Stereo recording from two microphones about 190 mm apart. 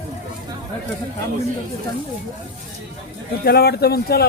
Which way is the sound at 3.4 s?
55° left (ahead or behind).